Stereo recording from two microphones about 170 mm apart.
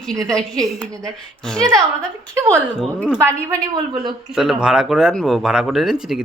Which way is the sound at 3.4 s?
25° right (ahead or behind).